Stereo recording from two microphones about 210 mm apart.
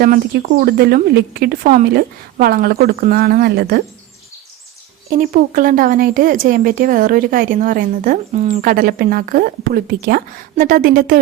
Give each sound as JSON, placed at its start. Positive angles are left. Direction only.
{"t": 0.0, "sound": "a woman's voice", "side_deg": -45}
{"t": 5.0, "sound": "speech", "side_deg": -40}